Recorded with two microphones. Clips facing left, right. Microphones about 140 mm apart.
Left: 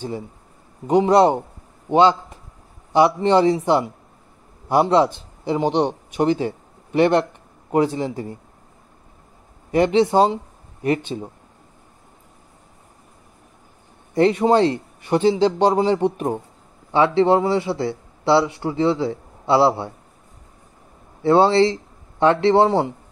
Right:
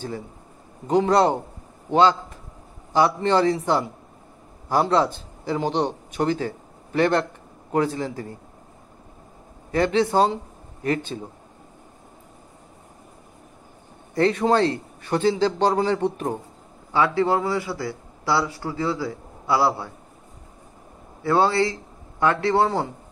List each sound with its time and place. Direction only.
0.8 s a man's voice: 20° left (ahead or behind)
9.7 s speech: 20° left (ahead or behind)
14.1 s a man's voice: 20° left (ahead or behind)
21.2 s a man's voice: 25° left (ahead or behind)